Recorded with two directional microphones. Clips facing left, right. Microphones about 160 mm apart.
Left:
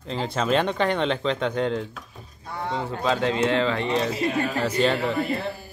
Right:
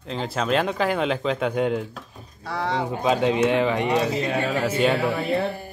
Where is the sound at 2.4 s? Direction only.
90° right.